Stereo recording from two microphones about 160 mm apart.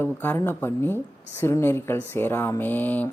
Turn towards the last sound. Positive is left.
turn(degrees=10)  # may be behind; listen again after turning